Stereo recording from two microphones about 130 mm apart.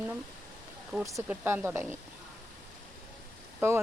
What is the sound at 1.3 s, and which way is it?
Speech, 15° right (ahead or behind).